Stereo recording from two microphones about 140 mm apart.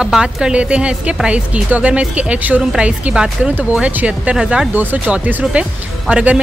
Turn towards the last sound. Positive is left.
turn(degrees=-10)  # may be behind; listen again after turning